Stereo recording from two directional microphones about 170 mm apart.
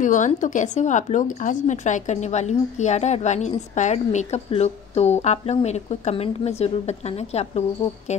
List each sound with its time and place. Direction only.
0.0 s a woman's voice: 50° left (ahead or behind)